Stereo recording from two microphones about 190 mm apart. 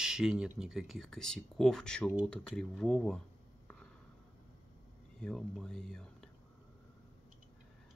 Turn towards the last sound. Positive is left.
turn(degrees=5)  # may be behind; listen again after turning